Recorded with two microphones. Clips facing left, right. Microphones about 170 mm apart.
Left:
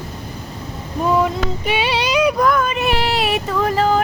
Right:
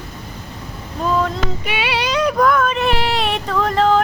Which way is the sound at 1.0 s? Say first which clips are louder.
Left 2 dB; 15° left (ahead or behind).